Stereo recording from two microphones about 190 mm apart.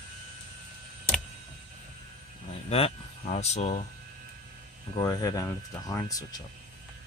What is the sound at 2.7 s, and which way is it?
Speech, 35° left (ahead or behind).